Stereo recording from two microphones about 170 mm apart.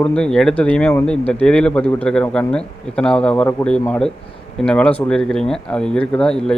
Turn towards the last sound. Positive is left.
turn(degrees=5)  # may be behind; listen again after turning